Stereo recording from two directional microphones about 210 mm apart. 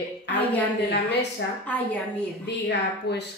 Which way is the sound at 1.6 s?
5° left (ahead or behind).